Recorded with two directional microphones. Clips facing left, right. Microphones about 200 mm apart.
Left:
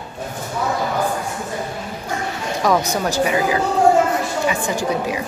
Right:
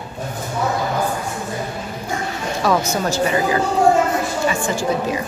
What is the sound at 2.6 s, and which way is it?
A woman's voice, 15° left (ahead or behind).